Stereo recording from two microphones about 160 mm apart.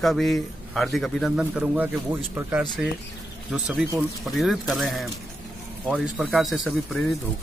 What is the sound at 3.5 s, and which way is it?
A man's voice, 5° right (ahead or behind).